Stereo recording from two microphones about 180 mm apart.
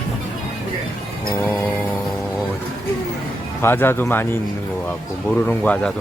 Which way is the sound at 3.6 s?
10° left (ahead or behind).